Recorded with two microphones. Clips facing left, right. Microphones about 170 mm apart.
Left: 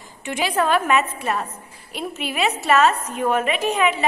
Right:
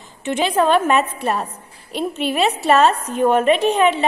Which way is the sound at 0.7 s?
30° right (ahead or behind).